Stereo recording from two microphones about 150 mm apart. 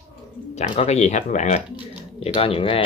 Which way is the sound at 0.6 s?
45° left (ahead or behind).